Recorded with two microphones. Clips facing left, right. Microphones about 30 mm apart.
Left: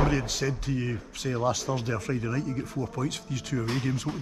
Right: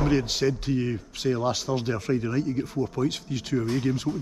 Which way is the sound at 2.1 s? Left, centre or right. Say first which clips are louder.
Right 4 dB; right.